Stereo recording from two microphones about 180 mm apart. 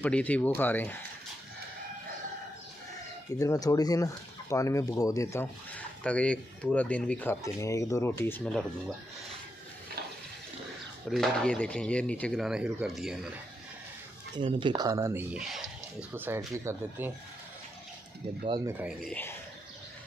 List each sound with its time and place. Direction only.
0.0 s speech: 10° left (ahead or behind)
3.3 s speech: 20° left (ahead or behind)
11.1 s speech: 5° left (ahead or behind)
14.3 s speech: 25° right (ahead or behind)
15.3 s speech: 5° right (ahead or behind)
18.7 s speech: 10° right (ahead or behind)
19.0 s speech: 10° left (ahead or behind)